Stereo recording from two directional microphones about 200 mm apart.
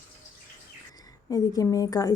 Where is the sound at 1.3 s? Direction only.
20° left (ahead or behind).